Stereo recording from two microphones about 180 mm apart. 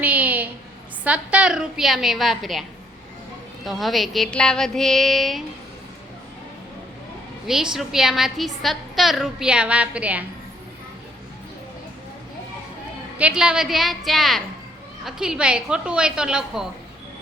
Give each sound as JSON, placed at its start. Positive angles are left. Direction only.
{"t": 0.0, "sound": "a sound", "side_deg": -10}
{"t": 1.0, "sound": "a woman's voice", "side_deg": -5}
{"t": 7.4, "sound": "a woman's voice", "side_deg": -5}
{"t": 13.1, "sound": "a woman's voice", "side_deg": -5}